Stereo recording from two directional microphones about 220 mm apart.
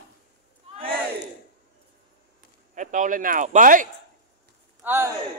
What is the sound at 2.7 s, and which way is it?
Speech, 35° right (ahead or behind).